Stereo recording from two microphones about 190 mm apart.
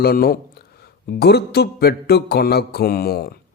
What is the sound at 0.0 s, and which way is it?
Speech, 50° left (ahead or behind).